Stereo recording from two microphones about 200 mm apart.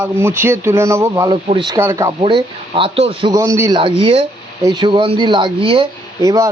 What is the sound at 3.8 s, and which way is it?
Speech, 25° right (ahead or behind).